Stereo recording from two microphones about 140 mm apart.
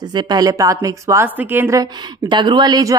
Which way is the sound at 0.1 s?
30° right (ahead or behind).